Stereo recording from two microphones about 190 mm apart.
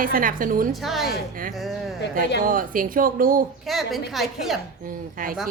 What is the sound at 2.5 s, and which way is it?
Speech, 45° right (ahead or behind).